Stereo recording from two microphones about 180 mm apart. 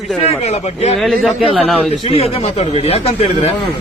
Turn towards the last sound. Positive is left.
turn(degrees=35)  # may be behind; listen again after turning